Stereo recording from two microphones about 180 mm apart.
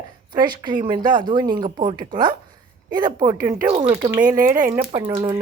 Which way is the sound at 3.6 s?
35° right (ahead or behind).